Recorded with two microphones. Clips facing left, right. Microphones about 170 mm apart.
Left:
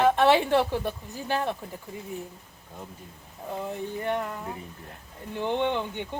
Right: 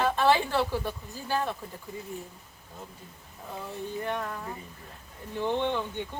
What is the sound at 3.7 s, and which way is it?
Speech, 20° left (ahead or behind).